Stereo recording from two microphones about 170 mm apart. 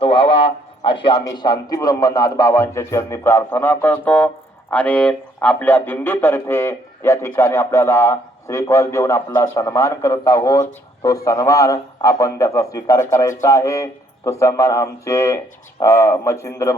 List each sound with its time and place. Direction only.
0.0 s a man's voice: 30° left (ahead or behind)